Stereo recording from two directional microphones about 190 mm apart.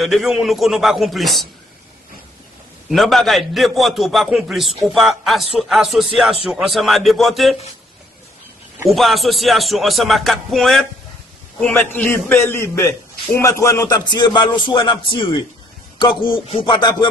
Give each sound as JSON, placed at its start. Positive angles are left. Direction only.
{"t": 0.0, "sound": "a man's voice", "side_deg": 0}
{"t": 2.9, "sound": "a man's voice", "side_deg": 0}
{"t": 8.8, "sound": "a man's voice", "side_deg": 0}
{"t": 16.0, "sound": "a sound", "side_deg": 25}